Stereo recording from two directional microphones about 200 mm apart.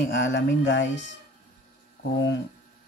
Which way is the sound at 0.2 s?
65° left (ahead or behind).